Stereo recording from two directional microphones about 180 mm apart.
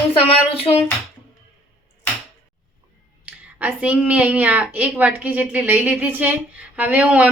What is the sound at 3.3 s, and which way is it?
A woman's voice, 10° right (ahead or behind).